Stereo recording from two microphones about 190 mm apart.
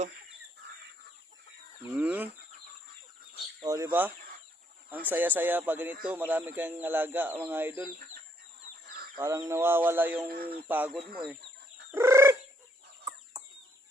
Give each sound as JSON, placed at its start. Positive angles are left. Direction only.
{"t": 2.0, "sound": "a sound", "side_deg": -10}
{"t": 3.6, "sound": "speech", "side_deg": -15}
{"t": 9.1, "sound": "speech", "side_deg": -15}
{"t": 10.2, "sound": "speech", "side_deg": -55}
{"t": 10.7, "sound": "speech", "side_deg": -10}
{"t": 11.9, "sound": "fowl", "side_deg": -15}